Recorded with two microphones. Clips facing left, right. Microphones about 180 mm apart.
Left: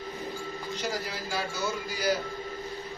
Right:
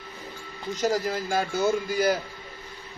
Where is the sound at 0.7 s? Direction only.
45° right (ahead or behind).